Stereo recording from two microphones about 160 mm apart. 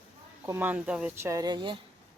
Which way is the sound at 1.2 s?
20° right (ahead or behind).